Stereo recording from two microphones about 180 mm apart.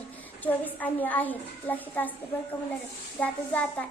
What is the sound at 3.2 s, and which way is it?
Speech, 5° left (ahead or behind).